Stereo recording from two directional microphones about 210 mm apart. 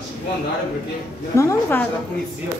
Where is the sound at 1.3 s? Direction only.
15° left (ahead or behind).